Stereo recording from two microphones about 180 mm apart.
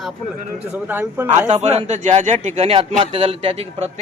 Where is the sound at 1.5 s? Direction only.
35° right (ahead or behind).